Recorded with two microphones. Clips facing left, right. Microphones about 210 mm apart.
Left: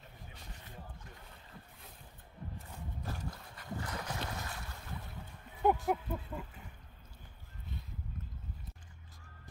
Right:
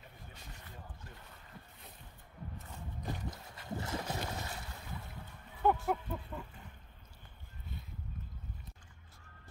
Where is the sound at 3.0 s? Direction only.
20° right (ahead or behind).